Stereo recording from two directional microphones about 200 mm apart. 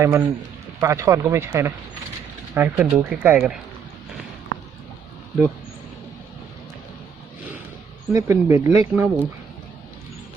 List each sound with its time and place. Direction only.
0.0 s speech: 10° right (ahead or behind)
8.1 s speech: 15° right (ahead or behind)